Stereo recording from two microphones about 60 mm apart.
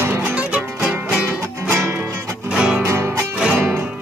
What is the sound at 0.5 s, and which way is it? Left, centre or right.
Music, centre.